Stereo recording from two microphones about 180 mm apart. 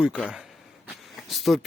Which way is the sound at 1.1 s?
Centre (ahead or behind).